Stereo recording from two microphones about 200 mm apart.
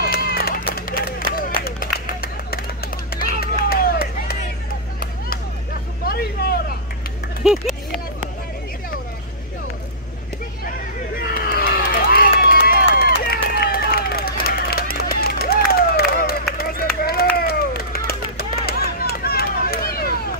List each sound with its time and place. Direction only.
0.0 s run: 50° left (ahead or behind)
0.7 s clapping: 45° left (ahead or behind)
1.6 s a sound: 50° left (ahead or behind)
6.0 s a sound: 50° left (ahead or behind)
7.4 s speech: 5° right (ahead or behind)
11.1 s run: 45° left (ahead or behind)